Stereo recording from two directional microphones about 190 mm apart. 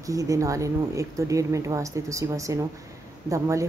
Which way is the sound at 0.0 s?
20° right (ahead or behind).